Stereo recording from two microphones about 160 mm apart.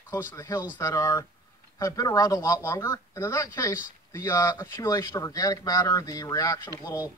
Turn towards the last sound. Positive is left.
turn(degrees=25)  # may be behind; listen again after turning